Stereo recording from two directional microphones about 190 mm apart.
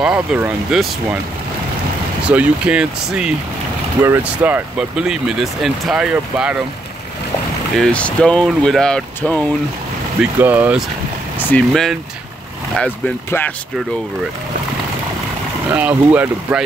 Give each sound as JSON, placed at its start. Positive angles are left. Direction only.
{"t": 0.0, "sound": "speech", "side_deg": -5}
{"t": 2.2, "sound": "speech", "side_deg": -5}
{"t": 7.7, "sound": "speech", "side_deg": 5}
{"t": 10.4, "sound": "speech", "side_deg": -10}
{"t": 11.3, "sound": "speech", "side_deg": 10}
{"t": 15.7, "sound": "speech", "side_deg": -10}